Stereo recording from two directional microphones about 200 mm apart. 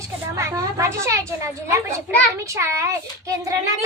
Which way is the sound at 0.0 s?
15° right (ahead or behind).